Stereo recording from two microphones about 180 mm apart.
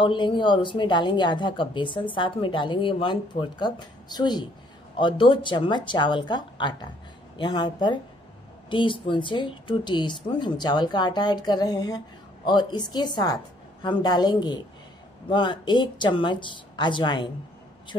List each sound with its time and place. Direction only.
0.0 s a woman's voice: 25° left (ahead or behind)